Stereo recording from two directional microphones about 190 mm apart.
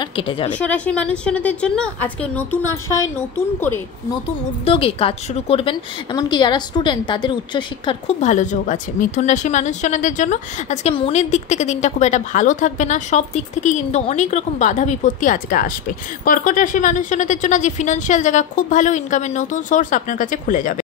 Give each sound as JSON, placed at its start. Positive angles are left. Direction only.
{"t": 0.0, "sound": "a woman's voice", "side_deg": 25}
{"t": 0.6, "sound": "a woman's voice", "side_deg": 5}
{"t": 4.6, "sound": "a woman's voice", "side_deg": 30}